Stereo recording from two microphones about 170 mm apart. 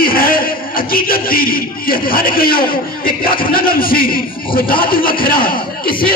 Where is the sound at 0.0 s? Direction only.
60° left (ahead or behind).